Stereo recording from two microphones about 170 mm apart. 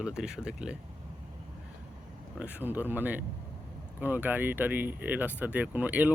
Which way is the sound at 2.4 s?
10° right (ahead or behind).